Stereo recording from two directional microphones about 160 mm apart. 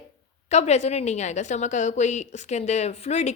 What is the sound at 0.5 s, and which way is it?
A woman's voice, 45° left (ahead or behind).